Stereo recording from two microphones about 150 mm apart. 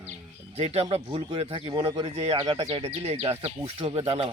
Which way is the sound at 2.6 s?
45° right (ahead or behind).